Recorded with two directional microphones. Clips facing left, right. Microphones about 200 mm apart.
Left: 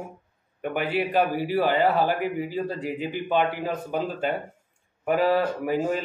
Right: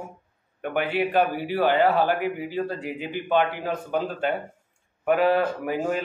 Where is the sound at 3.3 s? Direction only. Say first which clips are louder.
Right 2 dB; 5° left (ahead or behind).